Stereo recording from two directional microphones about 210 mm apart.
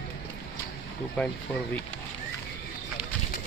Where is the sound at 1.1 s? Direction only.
5° left (ahead or behind).